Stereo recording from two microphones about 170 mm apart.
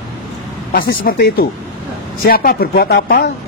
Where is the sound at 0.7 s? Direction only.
60° left (ahead or behind).